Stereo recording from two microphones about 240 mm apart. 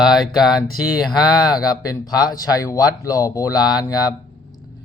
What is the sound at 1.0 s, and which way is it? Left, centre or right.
Speech, centre.